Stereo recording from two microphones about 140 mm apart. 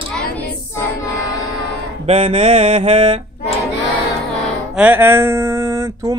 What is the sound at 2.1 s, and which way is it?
Speech, 40° right (ahead or behind).